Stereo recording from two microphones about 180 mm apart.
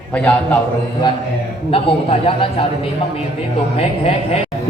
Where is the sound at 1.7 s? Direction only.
30° left (ahead or behind).